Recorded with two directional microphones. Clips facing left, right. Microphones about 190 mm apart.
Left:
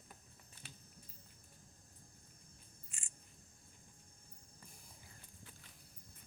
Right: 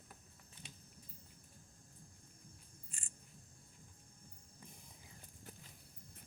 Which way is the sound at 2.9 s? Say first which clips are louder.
Right 5 dB; 35° right (ahead or behind).